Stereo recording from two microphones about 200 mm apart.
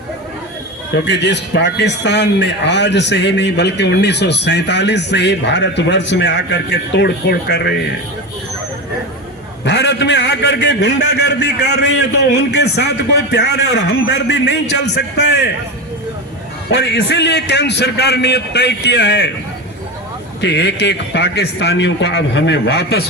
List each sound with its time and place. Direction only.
0.9 s a man's voice: 60° left (ahead or behind)
9.6 s a man's voice: 60° left (ahead or behind)
16.7 s a man's voice: 60° left (ahead or behind)
20.4 s a man's voice: 60° left (ahead or behind)